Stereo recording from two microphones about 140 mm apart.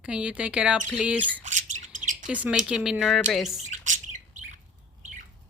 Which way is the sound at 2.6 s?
5° right (ahead or behind).